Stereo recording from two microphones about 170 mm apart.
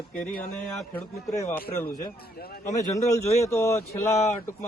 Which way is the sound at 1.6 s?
60° left (ahead or behind).